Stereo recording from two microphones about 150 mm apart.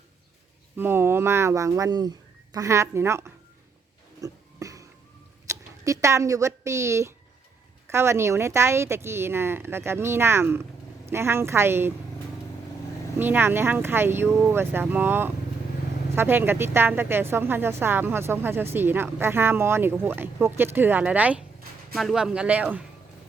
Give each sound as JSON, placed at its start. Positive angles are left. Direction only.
{"t": 0.8, "sound": "speech", "side_deg": -15}
{"t": 4.2, "sound": "a sound", "side_deg": -20}
{"t": 5.5, "sound": "speech", "side_deg": -20}
{"t": 13.1, "sound": "speech", "side_deg": -15}